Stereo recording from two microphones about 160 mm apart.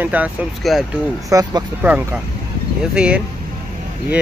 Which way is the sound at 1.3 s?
20° right (ahead or behind).